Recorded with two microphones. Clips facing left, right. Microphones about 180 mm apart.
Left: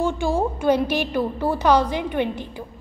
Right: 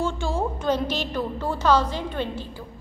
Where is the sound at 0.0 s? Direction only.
15° left (ahead or behind).